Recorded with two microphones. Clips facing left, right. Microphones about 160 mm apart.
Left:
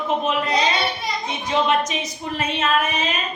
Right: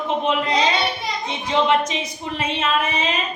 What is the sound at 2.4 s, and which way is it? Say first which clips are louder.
Speech: left 1 dB; 25° right (ahead or behind).